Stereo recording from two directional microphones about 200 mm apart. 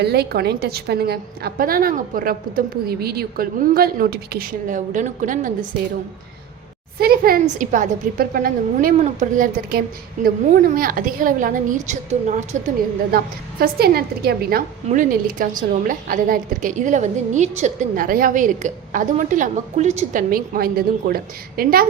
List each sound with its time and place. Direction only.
0.0 s a woman's voice: 55° right (ahead or behind)
7.0 s a woman's voice: 50° right (ahead or behind)
14.8 s a woman's voice: 40° right (ahead or behind)